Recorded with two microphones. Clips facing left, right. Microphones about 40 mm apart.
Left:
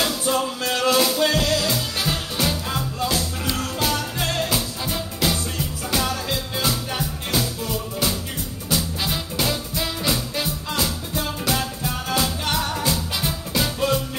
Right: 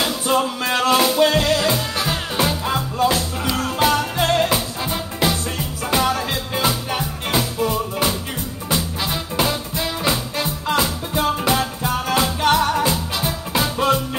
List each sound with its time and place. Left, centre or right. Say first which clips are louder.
0.3 s music: right 7 dB; right
2.0 s music: right 3 dB; centre
2.6 s music: right 6 dB; right
4.5 s music: right 3 dB; right
10.7 s music: right 9 dB; right